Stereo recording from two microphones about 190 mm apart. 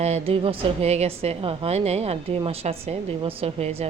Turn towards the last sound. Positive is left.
turn(degrees=-30)  # may be behind; listen again after turning